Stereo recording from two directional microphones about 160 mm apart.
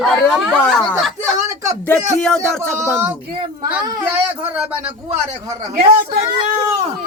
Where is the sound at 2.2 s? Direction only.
5° left (ahead or behind).